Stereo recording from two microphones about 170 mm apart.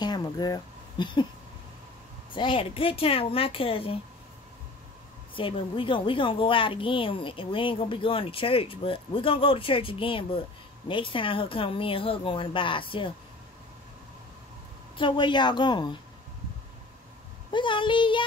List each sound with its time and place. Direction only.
0.0 s a sound: 25° left (ahead or behind)
2.3 s a woman's voice: 30° left (ahead or behind)
5.3 s a woman's voice: 30° left (ahead or behind)
15.0 s speech: 30° left (ahead or behind)
17.5 s speech: 30° left (ahead or behind)